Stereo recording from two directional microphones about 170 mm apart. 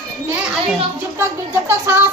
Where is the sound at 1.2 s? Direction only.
15° right (ahead or behind).